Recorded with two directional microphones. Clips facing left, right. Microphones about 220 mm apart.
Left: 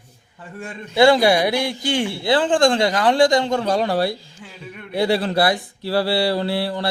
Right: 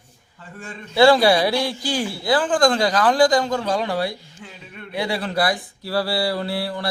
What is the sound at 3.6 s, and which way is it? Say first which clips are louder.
Speech: left 3 dB; 40° left (ahead or behind).